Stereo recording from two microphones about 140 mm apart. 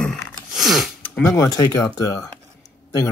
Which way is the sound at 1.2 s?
20° left (ahead or behind).